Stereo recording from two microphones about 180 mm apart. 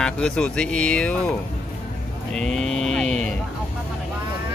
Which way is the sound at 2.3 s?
5° left (ahead or behind).